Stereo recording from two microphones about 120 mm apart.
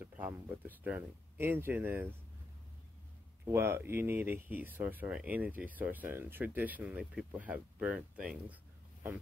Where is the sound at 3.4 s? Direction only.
20° right (ahead or behind).